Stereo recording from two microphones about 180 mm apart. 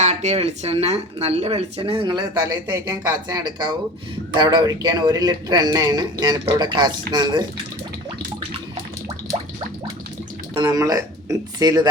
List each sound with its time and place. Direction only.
0.0 s speech: 40° right (ahead or behind); by 7.4 s 25° right (ahead or behind)
10.7 s speech: 20° right (ahead or behind)